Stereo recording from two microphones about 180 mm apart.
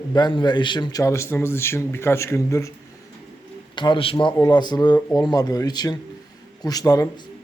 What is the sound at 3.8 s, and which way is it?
A man's voice, 25° left (ahead or behind).